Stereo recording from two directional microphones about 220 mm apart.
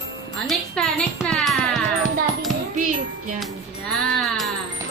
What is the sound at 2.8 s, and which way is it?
Music, 35° right (ahead or behind).